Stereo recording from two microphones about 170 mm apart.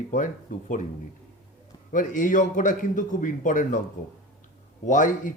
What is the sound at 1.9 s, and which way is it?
Speech, 50° left (ahead or behind).